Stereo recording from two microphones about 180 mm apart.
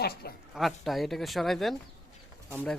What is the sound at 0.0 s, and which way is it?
Speech, 60° left (ahead or behind).